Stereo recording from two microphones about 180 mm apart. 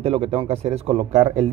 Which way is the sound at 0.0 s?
30° right (ahead or behind).